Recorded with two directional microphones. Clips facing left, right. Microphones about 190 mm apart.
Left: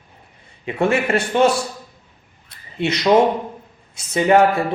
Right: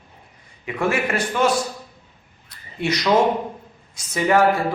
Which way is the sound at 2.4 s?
25° left (ahead or behind).